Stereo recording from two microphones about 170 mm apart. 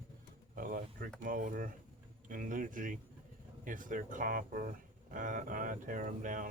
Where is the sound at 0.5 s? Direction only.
55° right (ahead or behind).